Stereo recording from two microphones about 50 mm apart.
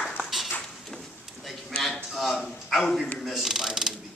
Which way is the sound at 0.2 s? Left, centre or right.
Centre.